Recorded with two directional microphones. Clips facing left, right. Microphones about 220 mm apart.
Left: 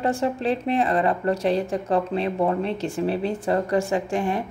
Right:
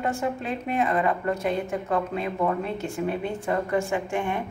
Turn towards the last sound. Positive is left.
turn(degrees=35)  # may be behind; listen again after turning